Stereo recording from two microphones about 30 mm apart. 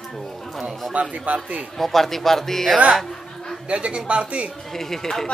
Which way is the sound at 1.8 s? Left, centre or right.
Centre.